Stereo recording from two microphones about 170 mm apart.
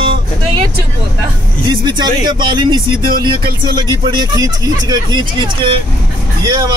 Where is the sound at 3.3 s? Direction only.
60° right (ahead or behind).